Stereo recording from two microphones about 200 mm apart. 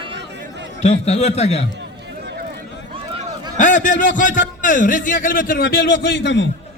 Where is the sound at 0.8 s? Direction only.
35° left (ahead or behind).